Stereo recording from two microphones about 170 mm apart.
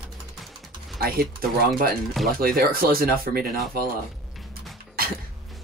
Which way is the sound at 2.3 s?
60° right (ahead or behind).